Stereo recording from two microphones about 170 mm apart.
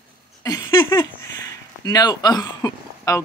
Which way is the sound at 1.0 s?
20° left (ahead or behind).